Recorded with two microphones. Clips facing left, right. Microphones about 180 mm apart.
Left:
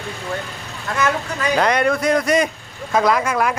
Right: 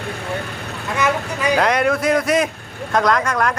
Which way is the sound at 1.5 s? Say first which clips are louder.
Even; centre (ahead or behind).